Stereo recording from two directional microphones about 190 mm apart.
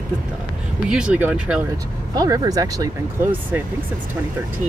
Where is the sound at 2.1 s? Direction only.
20° right (ahead or behind).